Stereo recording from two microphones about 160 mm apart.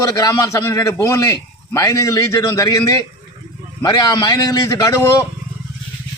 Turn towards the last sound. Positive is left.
turn(degrees=20)  # may be behind; listen again after turning